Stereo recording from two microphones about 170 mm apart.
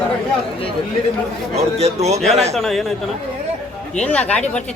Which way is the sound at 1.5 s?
40° right (ahead or behind).